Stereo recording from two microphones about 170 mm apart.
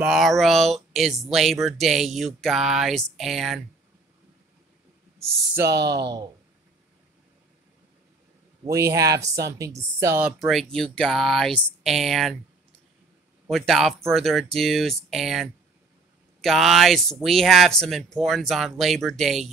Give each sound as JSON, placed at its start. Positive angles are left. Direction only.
{"t": 0.0, "sound": "speech", "side_deg": 0}
{"t": 5.7, "sound": "speech", "side_deg": -80}
{"t": 8.6, "sound": "speech", "side_deg": -15}
{"t": 10.4, "sound": "speech", "side_deg": 0}
{"t": 13.5, "sound": "speech", "side_deg": 0}